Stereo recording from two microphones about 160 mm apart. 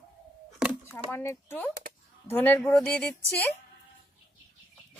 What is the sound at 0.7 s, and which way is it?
Speech, 15° left (ahead or behind).